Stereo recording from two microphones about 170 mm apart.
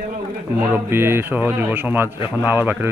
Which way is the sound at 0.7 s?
15° right (ahead or behind).